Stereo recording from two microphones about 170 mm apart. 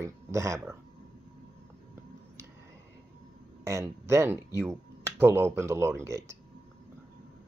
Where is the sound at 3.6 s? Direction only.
15° right (ahead or behind).